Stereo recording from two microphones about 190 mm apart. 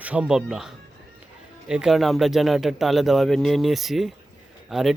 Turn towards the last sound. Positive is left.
turn(degrees=0)  # may be behind; listen again after turning